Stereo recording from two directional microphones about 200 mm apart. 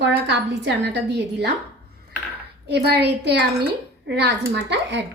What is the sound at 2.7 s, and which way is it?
A woman's voice, 55° right (ahead or behind).